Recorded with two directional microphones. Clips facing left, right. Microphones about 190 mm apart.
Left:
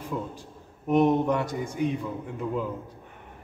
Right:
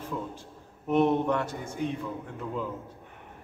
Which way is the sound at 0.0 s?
15° left (ahead or behind).